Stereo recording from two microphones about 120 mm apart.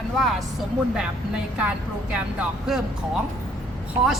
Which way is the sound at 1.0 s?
5° right (ahead or behind).